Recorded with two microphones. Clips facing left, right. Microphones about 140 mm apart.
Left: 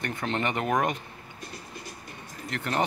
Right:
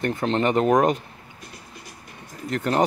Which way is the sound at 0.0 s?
35° right (ahead or behind).